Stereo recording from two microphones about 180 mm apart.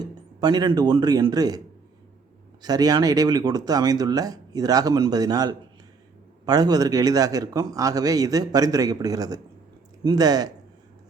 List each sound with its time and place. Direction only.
0.0 s a man's voice: 20° right (ahead or behind)